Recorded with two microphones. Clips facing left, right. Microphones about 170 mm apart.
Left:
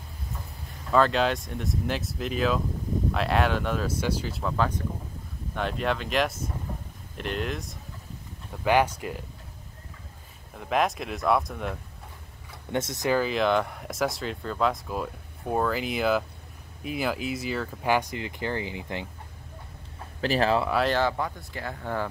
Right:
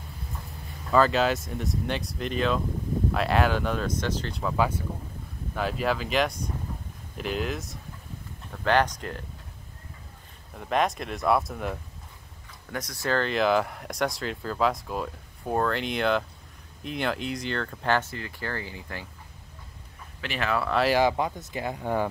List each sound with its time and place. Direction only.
0.9 s speech: centre (ahead or behind)
8.6 s speech: 10° left (ahead or behind)
10.5 s speech: centre (ahead or behind)
12.7 s speech: 25° left (ahead or behind)
13.2 s speech: centre (ahead or behind); by 19.0 s 20° left (ahead or behind)
20.2 s speech: 35° left (ahead or behind)
20.7 s speech: 5° right (ahead or behind)
21.0 s speech: 20° right (ahead or behind)